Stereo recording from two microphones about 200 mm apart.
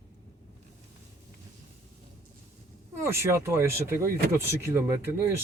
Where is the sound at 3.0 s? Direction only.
15° right (ahead or behind).